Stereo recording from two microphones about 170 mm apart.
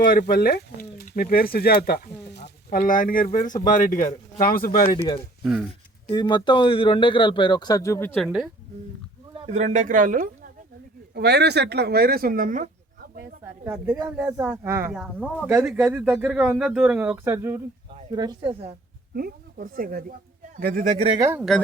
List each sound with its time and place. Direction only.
0.0 s speech: 60° left (ahead or behind)
6.1 s speech: 25° left (ahead or behind); by 8.3 s 10° left (ahead or behind)
9.5 s speech: 45° right (ahead or behind)
11.1 s speech: 75° right (ahead or behind); by 13.1 s 50° right (ahead or behind)
13.4 s speech: 10° right (ahead or behind)
18.1 s speech: 25° right (ahead or behind)
19.1 s speech: 60° right (ahead or behind); by 21.2 s 40° right (ahead or behind)
21.2 s speech: 15° right (ahead or behind)